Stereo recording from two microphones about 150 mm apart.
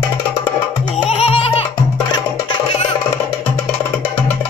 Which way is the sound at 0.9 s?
45° left (ahead or behind).